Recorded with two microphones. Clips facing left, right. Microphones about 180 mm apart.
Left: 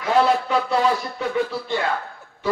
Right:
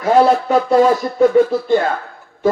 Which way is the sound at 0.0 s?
45° right (ahead or behind).